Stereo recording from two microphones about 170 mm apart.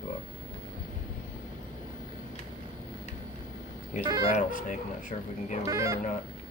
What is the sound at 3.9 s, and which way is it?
Speech, 50° left (ahead or behind).